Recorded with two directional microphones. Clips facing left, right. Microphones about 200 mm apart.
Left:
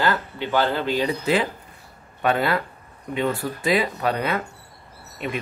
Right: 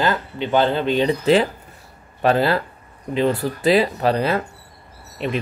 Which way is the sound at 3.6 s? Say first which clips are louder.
Right 5 dB; 30° right (ahead or behind).